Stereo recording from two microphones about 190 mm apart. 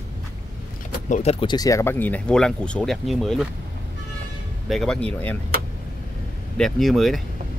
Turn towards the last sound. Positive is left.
turn(degrees=0)  # may be behind; listen again after turning